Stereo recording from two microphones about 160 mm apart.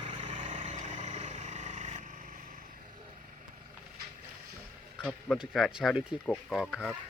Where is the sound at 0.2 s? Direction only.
50° right (ahead or behind).